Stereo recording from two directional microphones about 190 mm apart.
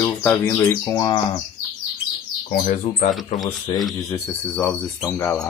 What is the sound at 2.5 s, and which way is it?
Speech, 45° left (ahead or behind).